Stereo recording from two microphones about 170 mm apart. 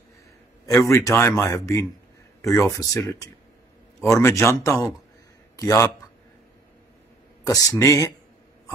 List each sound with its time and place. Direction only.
0.7 s a man's voice: 15° left (ahead or behind)
7.4 s speech: 20° left (ahead or behind)